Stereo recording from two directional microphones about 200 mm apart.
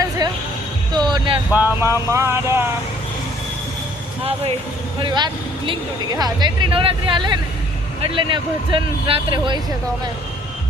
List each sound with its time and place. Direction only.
0.2 s a sound: 20° right (ahead or behind)
1.5 s speech: 10° right (ahead or behind)
4.9 s speech: 20° right (ahead or behind)